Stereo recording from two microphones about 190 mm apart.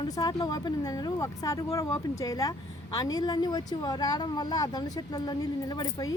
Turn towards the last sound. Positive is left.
turn(degrees=20)  # may be behind; listen again after turning